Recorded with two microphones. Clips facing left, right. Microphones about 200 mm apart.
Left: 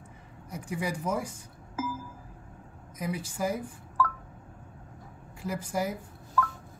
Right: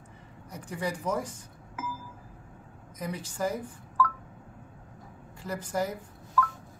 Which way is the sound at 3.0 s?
10° left (ahead or behind).